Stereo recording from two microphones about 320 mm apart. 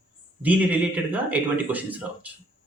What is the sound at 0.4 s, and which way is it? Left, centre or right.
Speech, centre.